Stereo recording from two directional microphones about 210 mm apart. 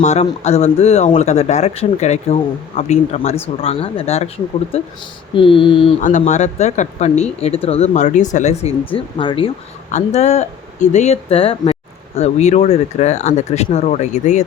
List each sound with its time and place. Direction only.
0.0 s speech: 30° left (ahead or behind)
5.3 s speech: 25° left (ahead or behind)
6.0 s speech: 35° left (ahead or behind)